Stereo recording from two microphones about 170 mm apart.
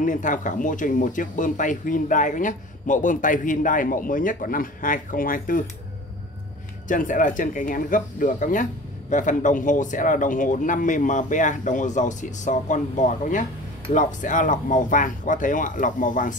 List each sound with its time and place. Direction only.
0.0 s speech: 50° left (ahead or behind)
6.9 s speech: 50° left (ahead or behind)